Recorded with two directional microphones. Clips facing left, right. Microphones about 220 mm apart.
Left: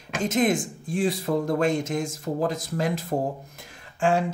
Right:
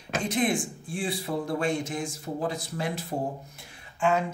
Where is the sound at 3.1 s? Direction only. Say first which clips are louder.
Left 4 dB; 50° left (ahead or behind).